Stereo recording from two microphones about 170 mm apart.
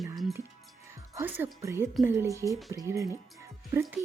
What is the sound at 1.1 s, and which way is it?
A woman's voice, 10° right (ahead or behind).